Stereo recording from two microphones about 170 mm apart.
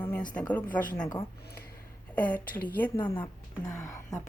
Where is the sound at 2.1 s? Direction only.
10° left (ahead or behind).